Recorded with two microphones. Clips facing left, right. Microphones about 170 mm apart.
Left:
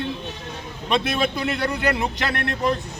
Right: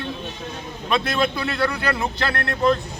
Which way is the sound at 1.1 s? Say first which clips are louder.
Even; 20° left (ahead or behind).